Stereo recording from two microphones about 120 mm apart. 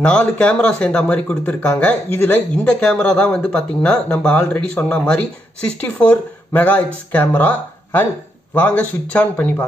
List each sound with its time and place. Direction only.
0.0 s speech: 10° left (ahead or behind)